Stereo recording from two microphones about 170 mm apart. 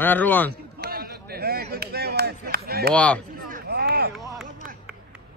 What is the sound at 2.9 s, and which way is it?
Speech, 5° left (ahead or behind).